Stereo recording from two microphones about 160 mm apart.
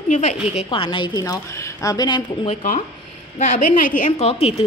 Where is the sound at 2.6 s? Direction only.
55° left (ahead or behind).